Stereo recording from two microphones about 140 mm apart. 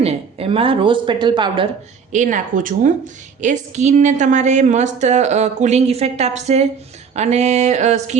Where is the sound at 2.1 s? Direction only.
65° right (ahead or behind).